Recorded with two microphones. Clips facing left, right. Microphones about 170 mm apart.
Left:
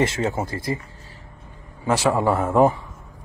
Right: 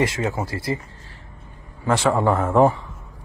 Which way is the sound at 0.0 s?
25° left (ahead or behind).